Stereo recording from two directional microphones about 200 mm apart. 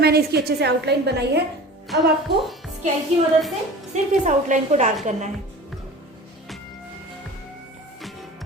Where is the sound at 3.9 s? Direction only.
35° right (ahead or behind).